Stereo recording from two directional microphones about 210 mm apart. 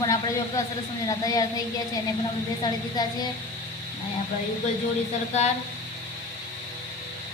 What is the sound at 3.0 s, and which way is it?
Child singing, 20° left (ahead or behind).